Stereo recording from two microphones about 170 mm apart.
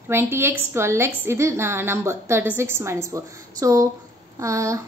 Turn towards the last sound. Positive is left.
turn(degrees=-20)  # may be behind; listen again after turning